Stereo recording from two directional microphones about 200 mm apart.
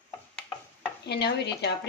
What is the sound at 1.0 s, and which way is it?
Stir, 55° left (ahead or behind).